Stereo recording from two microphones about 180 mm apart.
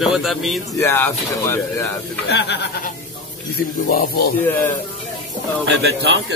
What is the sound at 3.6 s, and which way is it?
Speech, 55° left (ahead or behind).